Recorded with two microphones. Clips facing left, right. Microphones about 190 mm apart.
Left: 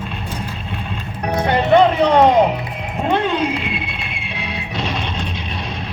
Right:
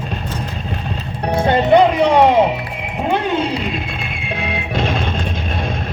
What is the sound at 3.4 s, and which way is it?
Music, 45° right (ahead or behind).